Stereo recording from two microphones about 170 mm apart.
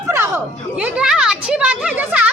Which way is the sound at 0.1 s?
15° right (ahead or behind).